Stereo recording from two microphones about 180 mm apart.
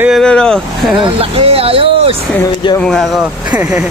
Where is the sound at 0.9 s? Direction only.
30° right (ahead or behind).